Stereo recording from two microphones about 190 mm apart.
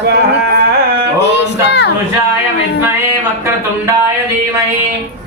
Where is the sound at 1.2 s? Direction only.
65° left (ahead or behind).